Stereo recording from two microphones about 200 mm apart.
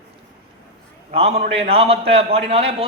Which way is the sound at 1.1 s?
30° right (ahead or behind).